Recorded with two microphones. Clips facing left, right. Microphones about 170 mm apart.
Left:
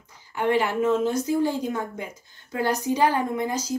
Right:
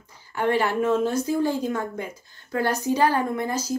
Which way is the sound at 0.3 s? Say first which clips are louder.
Even; 15° left (ahead or behind).